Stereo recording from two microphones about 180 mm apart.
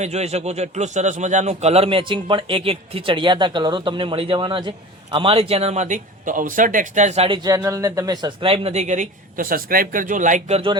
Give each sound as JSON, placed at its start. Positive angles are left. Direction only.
{"t": 0.0, "sound": "a man's voice", "side_deg": -35}
{"t": 7.4, "sound": "speech", "side_deg": -20}